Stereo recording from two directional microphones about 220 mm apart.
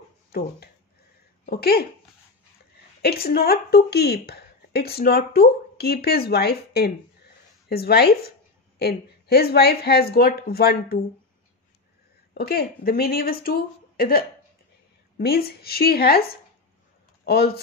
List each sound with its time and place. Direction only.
1.4 s speech: 45° left (ahead or behind)
3.0 s a woman's voice: 45° left (ahead or behind)
12.4 s speech: 45° left (ahead or behind)